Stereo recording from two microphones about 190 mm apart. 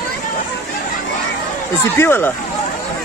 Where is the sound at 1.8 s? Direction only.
10° left (ahead or behind).